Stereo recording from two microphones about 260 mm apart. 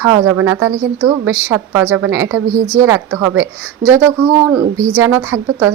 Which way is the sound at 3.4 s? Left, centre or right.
Centre.